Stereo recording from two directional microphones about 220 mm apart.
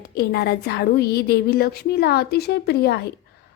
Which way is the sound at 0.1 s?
45° left (ahead or behind).